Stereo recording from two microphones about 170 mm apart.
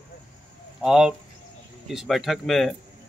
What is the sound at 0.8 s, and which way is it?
Speech, 5° right (ahead or behind).